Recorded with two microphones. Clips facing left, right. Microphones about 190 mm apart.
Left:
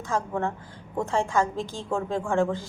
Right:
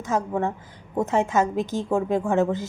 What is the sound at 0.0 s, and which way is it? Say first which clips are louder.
A woman's voice: right 3 dB; 20° right (ahead or behind).